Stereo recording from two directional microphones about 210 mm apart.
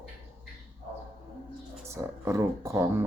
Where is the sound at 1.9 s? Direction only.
15° right (ahead or behind).